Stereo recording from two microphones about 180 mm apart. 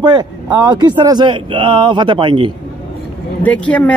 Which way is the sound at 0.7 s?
25° right (ahead or behind).